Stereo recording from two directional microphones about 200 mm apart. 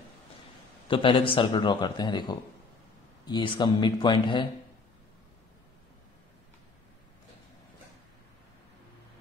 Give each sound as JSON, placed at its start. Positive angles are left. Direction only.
{"t": 0.8, "sound": "a man's voice", "side_deg": 25}